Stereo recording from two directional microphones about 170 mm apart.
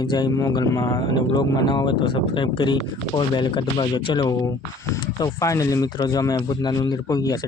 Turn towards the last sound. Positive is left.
turn(degrees=20)  # may be behind; listen again after turning